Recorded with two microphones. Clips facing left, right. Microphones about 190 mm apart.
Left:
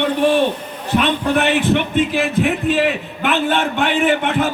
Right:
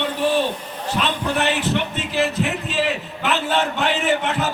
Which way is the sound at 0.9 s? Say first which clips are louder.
Left 6 dB; 60° left (ahead or behind).